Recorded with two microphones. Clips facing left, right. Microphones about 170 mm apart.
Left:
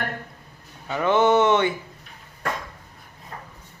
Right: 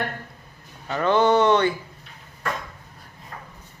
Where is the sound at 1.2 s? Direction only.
25° left (ahead or behind).